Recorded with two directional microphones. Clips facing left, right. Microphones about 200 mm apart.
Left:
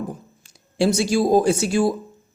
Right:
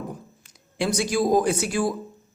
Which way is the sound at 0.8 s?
25° left (ahead or behind).